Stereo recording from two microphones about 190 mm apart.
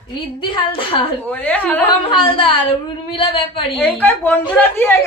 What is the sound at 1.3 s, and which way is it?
Speech, 10° left (ahead or behind).